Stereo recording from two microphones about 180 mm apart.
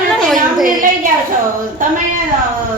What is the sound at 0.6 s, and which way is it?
Speech, 50° right (ahead or behind).